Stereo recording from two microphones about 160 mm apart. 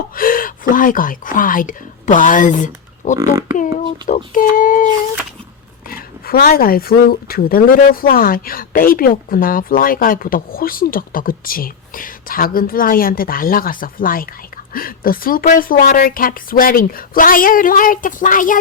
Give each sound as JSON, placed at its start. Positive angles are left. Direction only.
{"t": 0.2, "sound": "speech", "side_deg": 65}
{"t": 5.9, "sound": "speech", "side_deg": 70}